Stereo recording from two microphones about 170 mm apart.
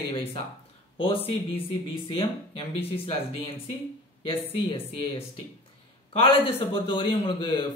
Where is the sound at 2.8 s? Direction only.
35° left (ahead or behind).